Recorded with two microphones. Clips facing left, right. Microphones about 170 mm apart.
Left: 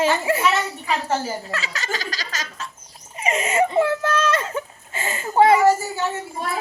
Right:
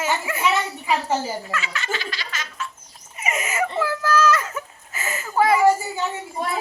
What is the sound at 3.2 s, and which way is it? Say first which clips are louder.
Speech: left 5 dB; 30° left (ahead or behind).